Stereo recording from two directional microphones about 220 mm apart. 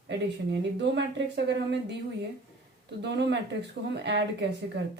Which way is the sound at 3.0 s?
50° right (ahead or behind).